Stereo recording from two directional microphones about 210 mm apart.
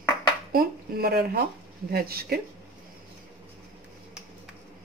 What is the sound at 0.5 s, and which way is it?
Speech, 45° right (ahead or behind).